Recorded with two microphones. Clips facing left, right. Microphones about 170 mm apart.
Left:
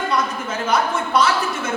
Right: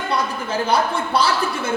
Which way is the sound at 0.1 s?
30° right (ahead or behind).